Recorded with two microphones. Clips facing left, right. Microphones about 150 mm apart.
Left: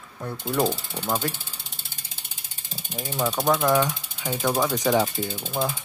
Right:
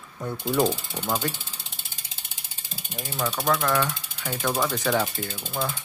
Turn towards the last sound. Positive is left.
turn(degrees=10)  # may be behind; listen again after turning